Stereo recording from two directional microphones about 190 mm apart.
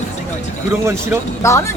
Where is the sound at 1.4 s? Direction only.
15° left (ahead or behind).